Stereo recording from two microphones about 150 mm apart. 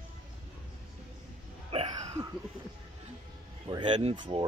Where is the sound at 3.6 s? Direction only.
35° right (ahead or behind).